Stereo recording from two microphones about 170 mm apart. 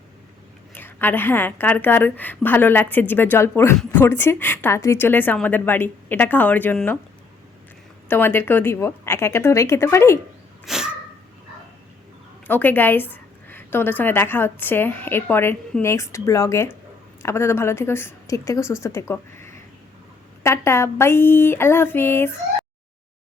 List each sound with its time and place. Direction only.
0.7 s a woman's voice: 10° left (ahead or behind)
8.0 s a woman's voice: 10° left (ahead or behind)
10.7 s sneeze: 5° right (ahead or behind)
12.5 s a woman's voice: 10° left (ahead or behind)